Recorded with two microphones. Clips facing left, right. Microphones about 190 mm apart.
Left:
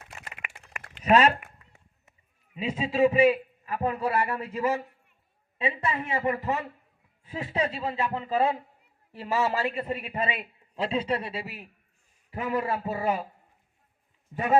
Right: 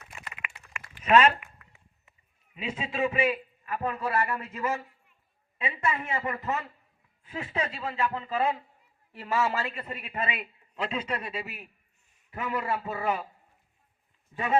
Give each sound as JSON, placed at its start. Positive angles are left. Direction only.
{"t": 0.1, "sound": "typing", "side_deg": 45}
{"t": 1.0, "sound": "a sound", "side_deg": 40}
{"t": 2.6, "sound": "a man's voice", "side_deg": 35}